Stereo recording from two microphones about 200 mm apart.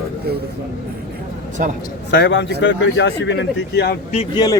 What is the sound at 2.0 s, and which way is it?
Speech, 60° left (ahead or behind).